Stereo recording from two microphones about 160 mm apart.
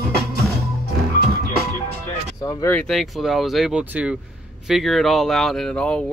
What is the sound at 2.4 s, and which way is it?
Speech, 20° left (ahead or behind).